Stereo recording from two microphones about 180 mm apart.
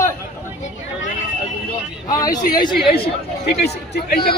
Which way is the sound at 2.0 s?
20° left (ahead or behind).